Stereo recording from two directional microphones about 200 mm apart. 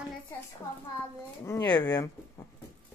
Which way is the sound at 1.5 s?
15° left (ahead or behind).